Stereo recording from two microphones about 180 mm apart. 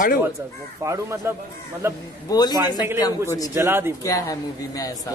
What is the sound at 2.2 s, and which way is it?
Speech, 20° left (ahead or behind).